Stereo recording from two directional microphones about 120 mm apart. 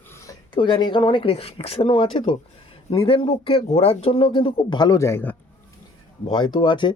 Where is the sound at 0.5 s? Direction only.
40° left (ahead or behind); by 5.3 s 20° left (ahead or behind).